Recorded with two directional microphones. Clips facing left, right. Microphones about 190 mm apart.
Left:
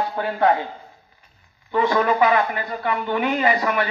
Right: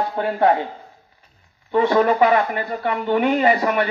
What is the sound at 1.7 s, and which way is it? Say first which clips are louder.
Speech: right 3 dB; 30° right (ahead or behind).